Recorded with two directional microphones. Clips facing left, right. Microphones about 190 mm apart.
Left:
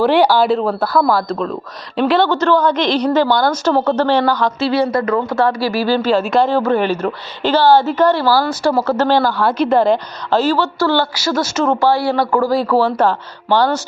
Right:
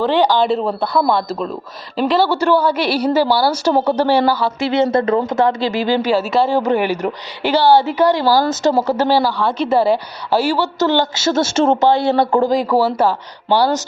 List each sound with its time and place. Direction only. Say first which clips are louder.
0.0 s a woman's voice: left 2 dB; 10° left (ahead or behind); by 4.5 s 10° right (ahead or behind)
4.6 s speech: right 2 dB; 20° right (ahead or behind); by 6.6 s 5° right (ahead or behind)
6.6 s a woman's voice: left 1 dB; 15° right (ahead or behind)
9.4 s a woman's voice: left 2 dB; centre (ahead or behind)